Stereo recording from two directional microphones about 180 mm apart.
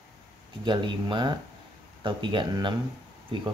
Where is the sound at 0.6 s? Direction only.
25° right (ahead or behind).